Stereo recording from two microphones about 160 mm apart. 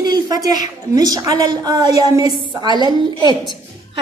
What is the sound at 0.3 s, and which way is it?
A woman's voice, 25° right (ahead or behind).